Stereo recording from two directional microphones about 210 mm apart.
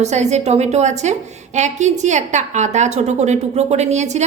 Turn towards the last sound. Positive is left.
turn(degrees=-35)  # may be behind; listen again after turning